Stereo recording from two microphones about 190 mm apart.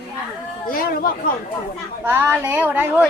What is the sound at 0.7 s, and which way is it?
Speech, 50° left (ahead or behind).